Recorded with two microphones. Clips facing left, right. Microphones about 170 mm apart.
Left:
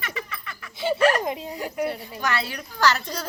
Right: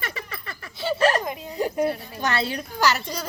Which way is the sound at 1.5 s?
25° right (ahead or behind).